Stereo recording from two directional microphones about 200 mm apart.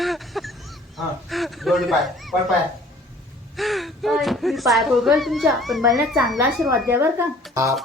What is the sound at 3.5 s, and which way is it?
Speech, centre (ahead or behind).